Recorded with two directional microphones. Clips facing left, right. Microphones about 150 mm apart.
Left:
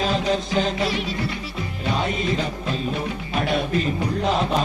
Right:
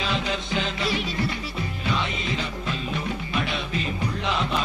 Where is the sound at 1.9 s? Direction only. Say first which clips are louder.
Left 4 dB; 45° left (ahead or behind).